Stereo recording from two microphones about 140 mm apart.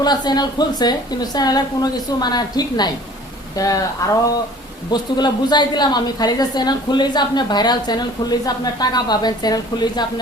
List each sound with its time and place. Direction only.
0.0 s a woman's voice: 30° left (ahead or behind)
4.9 s a woman's voice: 30° left (ahead or behind)